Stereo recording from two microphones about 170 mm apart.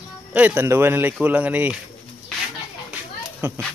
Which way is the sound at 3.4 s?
15° right (ahead or behind).